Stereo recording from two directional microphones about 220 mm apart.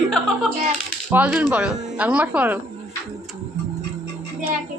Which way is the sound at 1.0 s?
5° right (ahead or behind).